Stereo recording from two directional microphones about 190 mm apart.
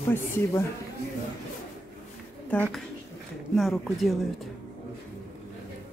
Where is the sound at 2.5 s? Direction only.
10° left (ahead or behind).